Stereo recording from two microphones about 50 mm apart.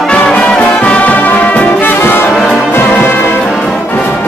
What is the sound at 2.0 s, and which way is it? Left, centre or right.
Music, left.